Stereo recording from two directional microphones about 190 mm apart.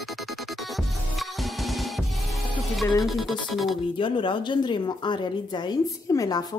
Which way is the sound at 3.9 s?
25° left (ahead or behind).